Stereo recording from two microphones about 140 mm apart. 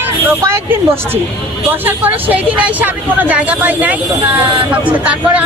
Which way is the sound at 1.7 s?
15° right (ahead or behind).